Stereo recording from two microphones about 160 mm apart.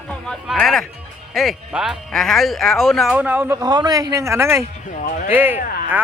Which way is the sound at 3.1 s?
10° right (ahead or behind).